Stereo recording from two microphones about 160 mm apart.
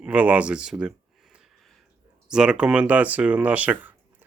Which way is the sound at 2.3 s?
5° right (ahead or behind).